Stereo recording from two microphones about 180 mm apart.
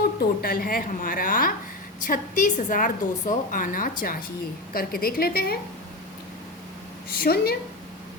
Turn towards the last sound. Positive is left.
turn(degrees=55)  # may be behind; listen again after turning